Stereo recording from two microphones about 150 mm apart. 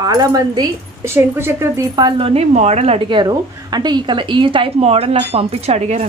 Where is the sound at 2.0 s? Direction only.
35° right (ahead or behind).